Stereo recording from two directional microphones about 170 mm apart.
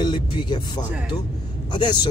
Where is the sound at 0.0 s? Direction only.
25° left (ahead or behind).